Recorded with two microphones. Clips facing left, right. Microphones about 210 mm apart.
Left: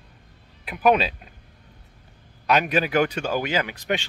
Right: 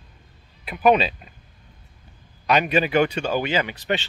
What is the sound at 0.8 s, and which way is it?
Speech, 5° left (ahead or behind).